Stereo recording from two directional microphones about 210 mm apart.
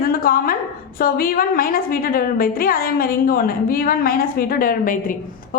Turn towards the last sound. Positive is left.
turn(degrees=40)  # may be behind; listen again after turning